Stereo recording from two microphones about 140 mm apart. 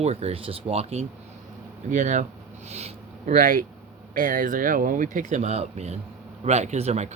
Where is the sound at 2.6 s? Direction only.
50° right (ahead or behind).